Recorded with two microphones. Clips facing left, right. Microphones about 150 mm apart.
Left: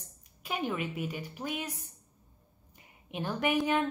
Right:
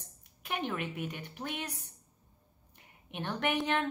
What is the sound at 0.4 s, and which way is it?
A woman's voice, 5° left (ahead or behind).